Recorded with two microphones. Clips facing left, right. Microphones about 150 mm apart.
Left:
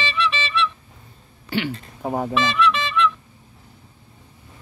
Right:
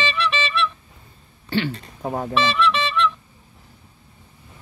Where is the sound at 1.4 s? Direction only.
10° left (ahead or behind).